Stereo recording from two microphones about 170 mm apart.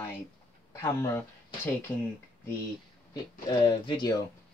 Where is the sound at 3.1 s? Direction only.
25° left (ahead or behind).